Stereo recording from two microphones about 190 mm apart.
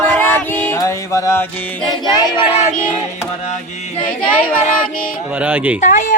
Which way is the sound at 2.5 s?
35° left (ahead or behind).